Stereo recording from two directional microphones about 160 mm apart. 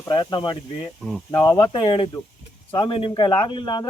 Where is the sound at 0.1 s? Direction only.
30° left (ahead or behind).